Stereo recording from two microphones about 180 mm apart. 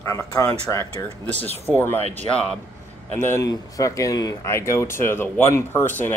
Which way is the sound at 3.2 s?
15° left (ahead or behind).